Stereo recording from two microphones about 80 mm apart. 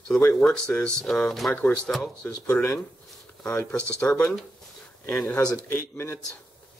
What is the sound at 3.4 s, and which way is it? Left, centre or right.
Speech, centre.